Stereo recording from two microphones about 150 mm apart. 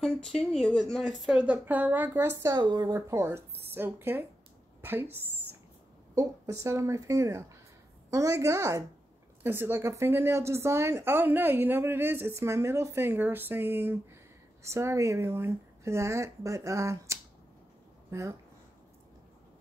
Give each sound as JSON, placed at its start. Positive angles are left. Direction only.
{"t": 0.0, "sound": "speech", "side_deg": 5}
{"t": 2.4, "sound": "a woman's voice", "side_deg": -25}
{"t": 6.1, "sound": "a woman's voice", "side_deg": -20}